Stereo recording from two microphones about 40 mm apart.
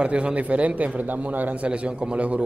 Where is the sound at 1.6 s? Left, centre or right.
Right.